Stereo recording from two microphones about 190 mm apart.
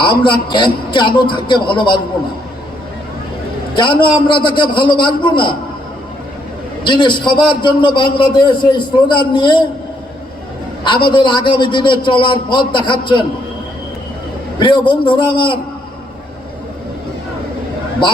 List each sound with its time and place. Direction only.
0.0 s a man's voice: 25° left (ahead or behind)
3.8 s a man's voice: 25° left (ahead or behind)
6.8 s a man's voice: 25° left (ahead or behind)
11.1 s a man's voice: 25° left (ahead or behind)
14.6 s a man's voice: 25° left (ahead or behind)